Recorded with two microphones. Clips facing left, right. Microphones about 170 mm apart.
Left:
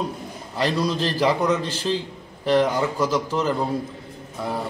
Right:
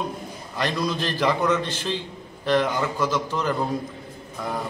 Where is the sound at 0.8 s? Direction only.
35° left (ahead or behind).